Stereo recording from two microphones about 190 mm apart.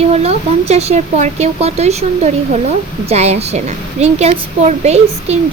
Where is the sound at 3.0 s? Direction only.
35° right (ahead or behind).